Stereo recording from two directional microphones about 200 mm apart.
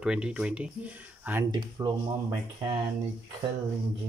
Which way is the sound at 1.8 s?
20° right (ahead or behind).